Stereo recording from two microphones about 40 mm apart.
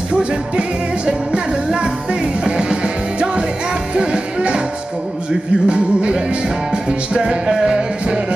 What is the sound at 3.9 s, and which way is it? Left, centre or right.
Music, right.